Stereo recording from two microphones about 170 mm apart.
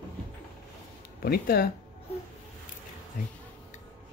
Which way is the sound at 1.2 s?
60° left (ahead or behind).